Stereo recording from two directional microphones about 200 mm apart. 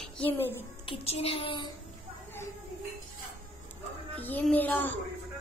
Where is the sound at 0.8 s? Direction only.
30° left (ahead or behind).